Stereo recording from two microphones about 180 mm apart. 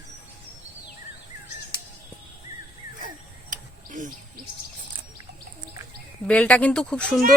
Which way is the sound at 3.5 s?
45° right (ahead or behind).